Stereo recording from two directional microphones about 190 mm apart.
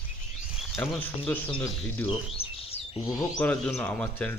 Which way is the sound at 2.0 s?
30° left (ahead or behind).